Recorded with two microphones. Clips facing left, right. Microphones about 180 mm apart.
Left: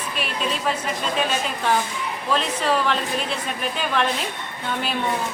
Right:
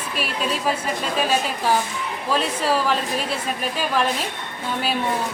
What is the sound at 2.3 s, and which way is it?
A woman's voice, 5° right (ahead or behind).